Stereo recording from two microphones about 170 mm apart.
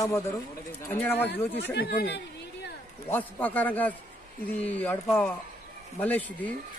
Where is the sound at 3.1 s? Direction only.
10° left (ahead or behind).